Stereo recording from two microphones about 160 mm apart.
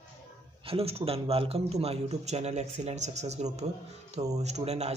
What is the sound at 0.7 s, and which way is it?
Speech, 40° right (ahead or behind).